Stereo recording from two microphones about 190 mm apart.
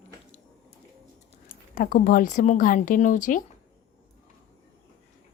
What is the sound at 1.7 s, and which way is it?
Speech, 45° left (ahead or behind).